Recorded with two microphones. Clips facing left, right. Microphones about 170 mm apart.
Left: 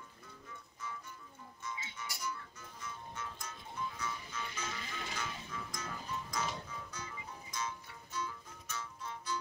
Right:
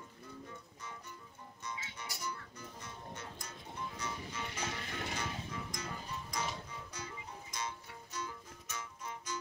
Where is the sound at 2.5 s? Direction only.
40° right (ahead or behind).